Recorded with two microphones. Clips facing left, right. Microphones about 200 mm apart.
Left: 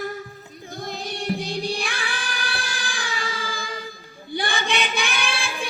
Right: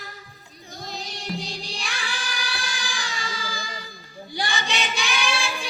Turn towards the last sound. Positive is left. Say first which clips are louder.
# right 1 dB
turn(degrees=55)  # may be behind; listen again after turning